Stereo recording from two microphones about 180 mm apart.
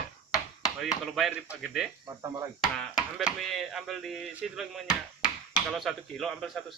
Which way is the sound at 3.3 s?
Centre (ahead or behind).